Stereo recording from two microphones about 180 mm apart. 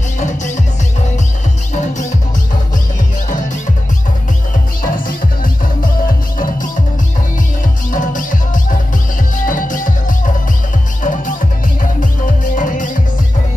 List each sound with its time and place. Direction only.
4.8 s music: 50° left (ahead or behind)
7.9 s music: 45° left (ahead or behind)
9.4 s music: 45° left (ahead or behind)
12.5 s music: 45° left (ahead or behind)